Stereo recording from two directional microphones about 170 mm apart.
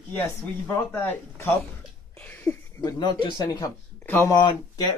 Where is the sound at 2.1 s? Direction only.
10° left (ahead or behind).